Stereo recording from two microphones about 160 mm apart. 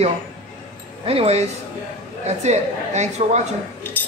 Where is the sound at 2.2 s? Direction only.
45° right (ahead or behind).